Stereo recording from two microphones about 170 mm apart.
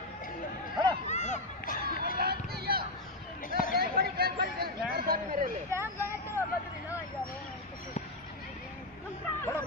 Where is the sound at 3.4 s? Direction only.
55° left (ahead or behind).